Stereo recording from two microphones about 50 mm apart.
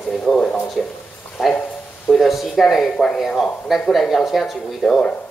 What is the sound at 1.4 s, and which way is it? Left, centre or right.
Speech, centre.